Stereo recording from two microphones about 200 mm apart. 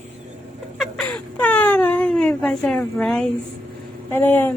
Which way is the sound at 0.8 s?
Centre (ahead or behind).